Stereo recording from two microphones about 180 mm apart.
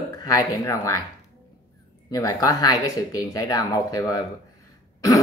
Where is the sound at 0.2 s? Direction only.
20° left (ahead or behind).